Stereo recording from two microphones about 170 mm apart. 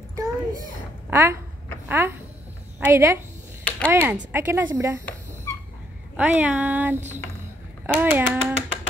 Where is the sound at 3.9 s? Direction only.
10° right (ahead or behind).